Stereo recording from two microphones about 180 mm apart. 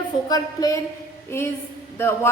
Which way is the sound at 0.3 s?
20° left (ahead or behind).